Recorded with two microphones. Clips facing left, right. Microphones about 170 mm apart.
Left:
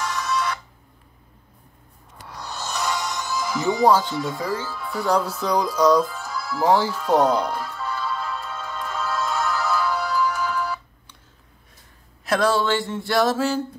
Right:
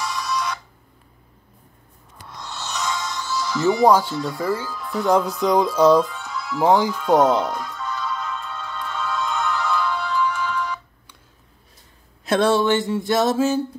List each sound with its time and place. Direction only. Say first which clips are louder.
0.1 s a sound: left 1 dB; 15° right (ahead or behind)
2.4 s music: left 1 dB; 10° left (ahead or behind)
3.8 s speech: right 1 dB; 15° right (ahead or behind)
4.6 s speech: right 2 dB; 5° left (ahead or behind)
5.0 s a sound: right 4 dB; 20° right (ahead or behind)
6.1 s music: right 1 dB; 5° left (ahead or behind)
6.7 s speech: right 1 dB; 15° right (ahead or behind)
7.0 s speech: right 2 dB; centre (ahead or behind)
7.4 s music: even; 5° left (ahead or behind)
12.3 s a sound: right 3 dB; 25° right (ahead or behind)